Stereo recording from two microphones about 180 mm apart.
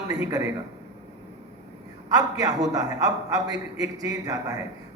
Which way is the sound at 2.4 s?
20° right (ahead or behind).